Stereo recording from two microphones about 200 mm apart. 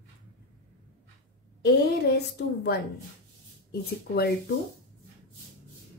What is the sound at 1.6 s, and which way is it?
A woman's voice, 55° left (ahead or behind).